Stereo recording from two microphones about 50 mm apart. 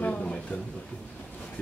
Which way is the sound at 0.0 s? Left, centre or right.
Left.